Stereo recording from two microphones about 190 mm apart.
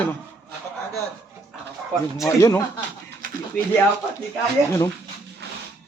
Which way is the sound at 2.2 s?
15° left (ahead or behind).